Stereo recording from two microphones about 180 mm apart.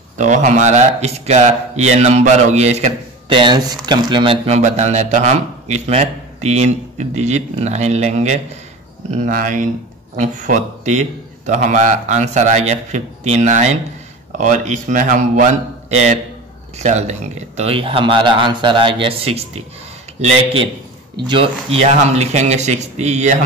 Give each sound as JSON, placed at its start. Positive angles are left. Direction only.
{"t": 0.2, "sound": "a man's voice", "side_deg": -40}